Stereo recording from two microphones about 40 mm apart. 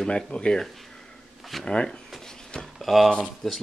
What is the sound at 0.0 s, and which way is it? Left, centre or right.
Speech, left.